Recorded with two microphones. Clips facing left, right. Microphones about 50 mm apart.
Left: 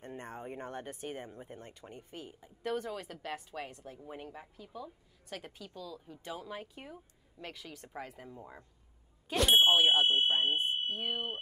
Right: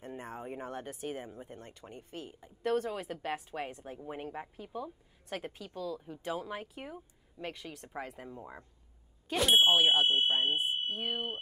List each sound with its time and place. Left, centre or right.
0.0 s speech: centre
1.6 s speech: centre
2.4 s speech: centre
2.9 s a woman's voice: centre